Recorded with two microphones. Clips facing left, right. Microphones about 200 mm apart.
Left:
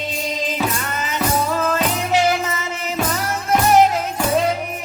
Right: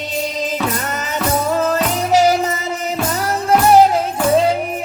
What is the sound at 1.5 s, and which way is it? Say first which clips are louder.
Music: right 3 dB; 40° right (ahead or behind).